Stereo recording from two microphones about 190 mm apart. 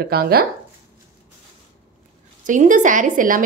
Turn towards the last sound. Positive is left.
turn(degrees=-45)  # may be behind; listen again after turning